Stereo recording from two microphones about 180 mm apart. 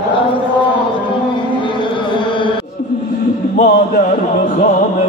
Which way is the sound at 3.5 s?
50° left (ahead or behind).